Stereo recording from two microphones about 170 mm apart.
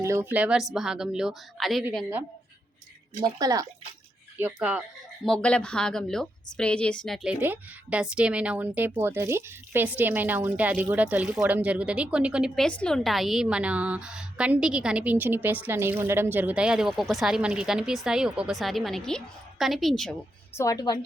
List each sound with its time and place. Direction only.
0.0 s speech: 15° right (ahead or behind); by 1.8 s centre (ahead or behind)
3.2 s speech: 25° right (ahead or behind)
4.4 s speech: 5° right (ahead or behind)
5.2 s speech: 5° left (ahead or behind)
20.6 s a woman's voice: 20° left (ahead or behind)